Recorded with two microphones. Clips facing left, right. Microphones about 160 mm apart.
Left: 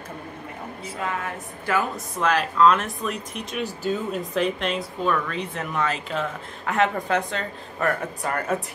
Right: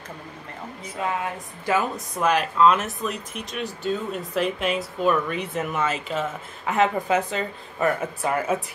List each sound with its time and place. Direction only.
1.0 s a woman's voice: 20° right (ahead or behind)
2.1 s speech: 10° right (ahead or behind)